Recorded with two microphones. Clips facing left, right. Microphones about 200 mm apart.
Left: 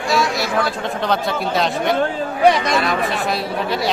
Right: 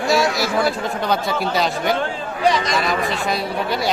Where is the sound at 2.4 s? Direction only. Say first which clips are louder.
Left 4 dB; 60° left (ahead or behind).